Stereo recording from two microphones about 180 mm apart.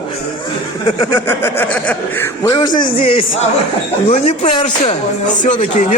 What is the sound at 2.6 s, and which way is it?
Speech, 25° left (ahead or behind).